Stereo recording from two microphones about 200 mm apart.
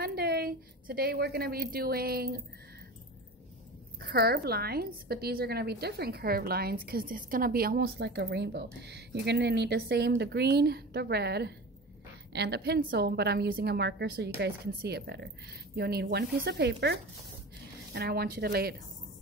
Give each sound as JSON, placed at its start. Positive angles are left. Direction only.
{"t": 0.0, "sound": "a woman's voice", "side_deg": -50}
{"t": 4.0, "sound": "a woman's voice", "side_deg": -50}